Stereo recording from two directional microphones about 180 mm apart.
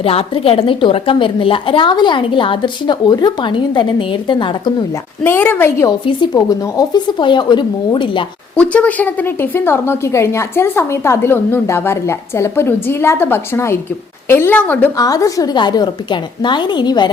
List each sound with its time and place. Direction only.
0.0 s a woman's voice: 35° left (ahead or behind)
5.2 s a woman's voice: 10° left (ahead or behind); by 8.2 s 25° left (ahead or behind)
8.5 s a woman's voice: 10° left (ahead or behind)
14.9 s a woman's voice: 20° left (ahead or behind)